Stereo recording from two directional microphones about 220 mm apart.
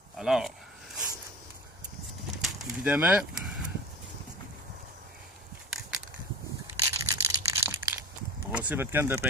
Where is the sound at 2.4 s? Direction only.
Centre (ahead or behind).